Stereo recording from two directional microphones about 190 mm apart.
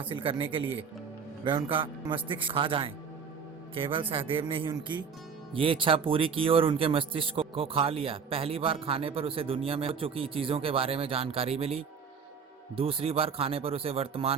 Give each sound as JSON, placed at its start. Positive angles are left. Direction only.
{"t": 0.0, "sound": "speech", "side_deg": -30}